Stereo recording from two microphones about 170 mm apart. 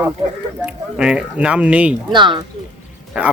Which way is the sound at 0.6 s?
5° right (ahead or behind).